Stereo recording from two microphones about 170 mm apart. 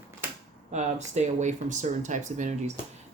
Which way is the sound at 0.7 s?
45° right (ahead or behind).